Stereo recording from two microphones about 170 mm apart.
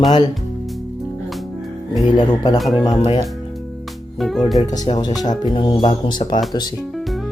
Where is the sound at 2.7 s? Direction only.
25° left (ahead or behind).